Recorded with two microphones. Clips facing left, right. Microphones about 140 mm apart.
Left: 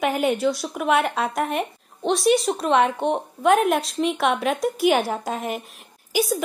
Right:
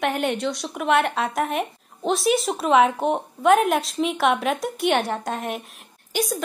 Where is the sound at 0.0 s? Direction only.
Centre (ahead or behind).